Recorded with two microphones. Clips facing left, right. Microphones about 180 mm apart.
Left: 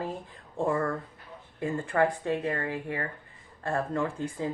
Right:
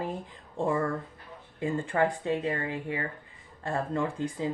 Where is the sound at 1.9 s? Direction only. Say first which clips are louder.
Left 2 dB; 20° right (ahead or behind).